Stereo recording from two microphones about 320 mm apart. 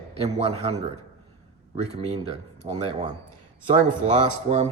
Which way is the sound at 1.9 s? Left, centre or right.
Centre.